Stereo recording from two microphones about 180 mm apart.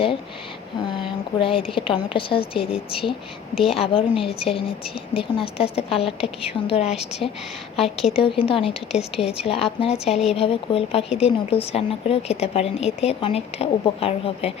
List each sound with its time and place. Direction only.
1.4 s a woman's voice: 30° left (ahead or behind)